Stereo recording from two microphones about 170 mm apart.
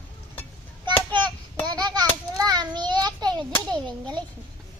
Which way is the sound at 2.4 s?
25° right (ahead or behind).